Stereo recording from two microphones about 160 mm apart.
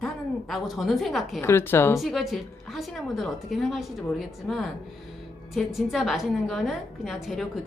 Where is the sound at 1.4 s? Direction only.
15° left (ahead or behind).